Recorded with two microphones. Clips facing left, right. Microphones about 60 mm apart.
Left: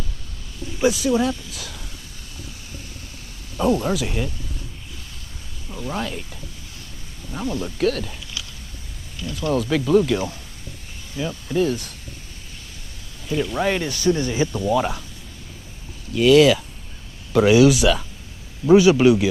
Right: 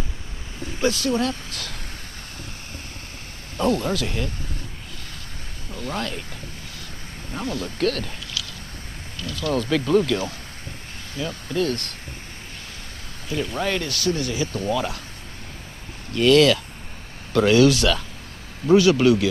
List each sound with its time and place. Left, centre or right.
0.7 s speech: centre
3.5 s speech: centre
5.7 s speech: centre
7.4 s speech: centre
7.8 s speech: centre
9.2 s speech: left
9.5 s speech: centre
11.2 s speech: centre
11.5 s speech: centre
13.3 s speech: centre
16.1 s speech: centre